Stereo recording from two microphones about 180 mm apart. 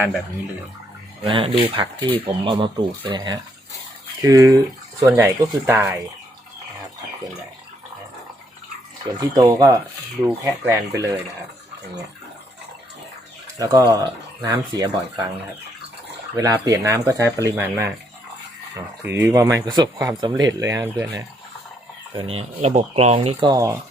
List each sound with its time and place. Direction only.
1.3 s speech: 30° right (ahead or behind); by 6.0 s 15° right (ahead or behind)
9.3 s speech: 20° right (ahead or behind)
13.6 s speech: 20° right (ahead or behind)
16.3 s speech: 20° right (ahead or behind)
19.0 s speech: 15° right (ahead or behind)
22.1 s speech: 30° right (ahead or behind)